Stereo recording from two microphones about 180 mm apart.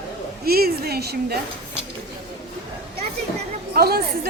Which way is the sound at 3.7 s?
60° right (ahead or behind).